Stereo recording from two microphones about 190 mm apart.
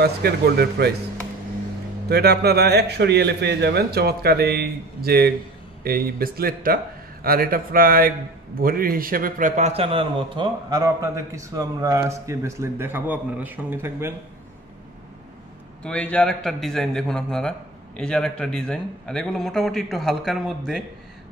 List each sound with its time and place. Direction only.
0.0 s a man's voice: 55° right (ahead or behind)
2.0 s a man's voice: 60° right (ahead or behind); by 14.1 s 10° right (ahead or behind)
15.8 s a man's voice: 5° left (ahead or behind)